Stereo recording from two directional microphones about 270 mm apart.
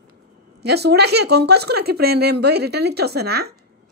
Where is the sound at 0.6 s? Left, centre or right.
Right.